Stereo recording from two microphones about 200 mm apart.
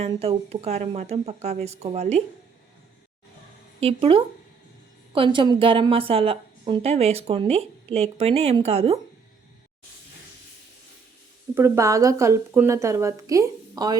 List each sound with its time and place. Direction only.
0.1 s speech: 30° right (ahead or behind)
3.8 s a woman's voice: 30° right (ahead or behind)
11.5 s a woman's voice: 10° right (ahead or behind)